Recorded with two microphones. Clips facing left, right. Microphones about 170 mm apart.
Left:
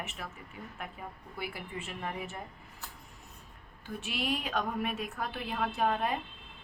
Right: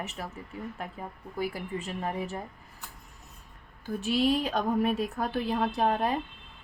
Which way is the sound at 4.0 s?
35° right (ahead or behind).